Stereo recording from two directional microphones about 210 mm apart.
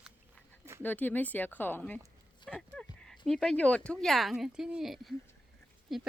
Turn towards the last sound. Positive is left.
turn(degrees=0)  # may be behind; listen again after turning